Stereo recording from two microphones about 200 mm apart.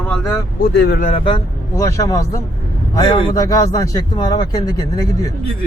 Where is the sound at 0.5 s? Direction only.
50° left (ahead or behind).